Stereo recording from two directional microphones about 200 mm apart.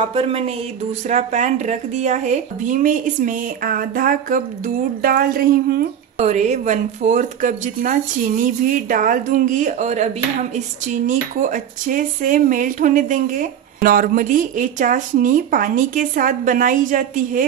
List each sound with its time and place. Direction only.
0.1 s speech: 30° right (ahead or behind); by 5.9 s 50° right (ahead or behind)
6.1 s speech: 35° right (ahead or behind)